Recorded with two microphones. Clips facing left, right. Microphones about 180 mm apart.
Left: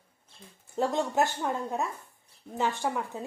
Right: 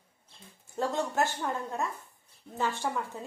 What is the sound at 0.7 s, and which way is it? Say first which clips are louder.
A woman's voice: left 3 dB; 15° left (ahead or behind).